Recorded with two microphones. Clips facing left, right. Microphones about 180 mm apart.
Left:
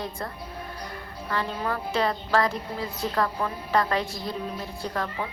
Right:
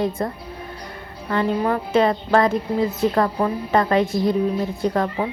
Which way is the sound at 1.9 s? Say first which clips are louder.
Right 7 dB; 20° right (ahead or behind).